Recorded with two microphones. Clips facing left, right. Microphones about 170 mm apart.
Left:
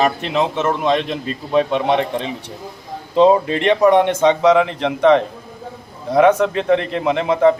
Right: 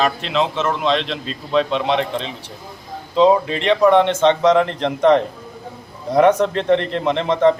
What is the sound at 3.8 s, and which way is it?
A man's voice, 10° left (ahead or behind).